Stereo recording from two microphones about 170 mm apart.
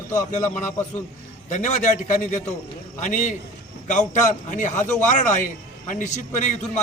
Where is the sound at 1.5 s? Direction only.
45° left (ahead or behind).